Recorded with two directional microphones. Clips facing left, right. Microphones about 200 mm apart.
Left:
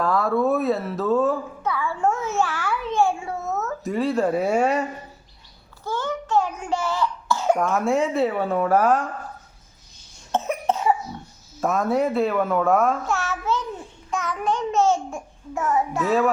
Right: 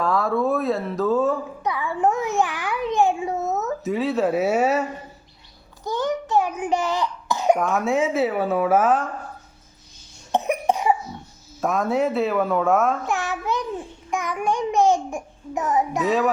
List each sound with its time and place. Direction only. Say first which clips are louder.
0.0 s speech: left 1 dB; centre (ahead or behind)
1.6 s a sound: right 1 dB; 15° right (ahead or behind)
3.8 s a woman's voice: even; centre (ahead or behind)
5.8 s cough: right 3 dB; 15° right (ahead or behind)
7.6 s a woman's voice: even; centre (ahead or behind)
10.3 s cough: right 2 dB; 15° right (ahead or behind)
11.6 s a woman's voice: even; centre (ahead or behind)
13.1 s a sound: even; 15° right (ahead or behind)
14.1 s babbling: right 1 dB; 15° right (ahead or behind)
16.0 s a woman's voice: left 1 dB; centre (ahead or behind)